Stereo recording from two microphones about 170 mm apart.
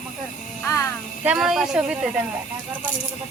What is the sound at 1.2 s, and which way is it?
Speech, 5° right (ahead or behind).